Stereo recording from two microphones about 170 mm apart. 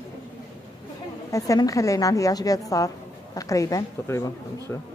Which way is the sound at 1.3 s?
20° left (ahead or behind).